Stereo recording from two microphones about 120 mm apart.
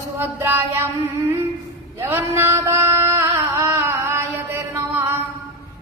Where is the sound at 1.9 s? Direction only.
25° right (ahead or behind).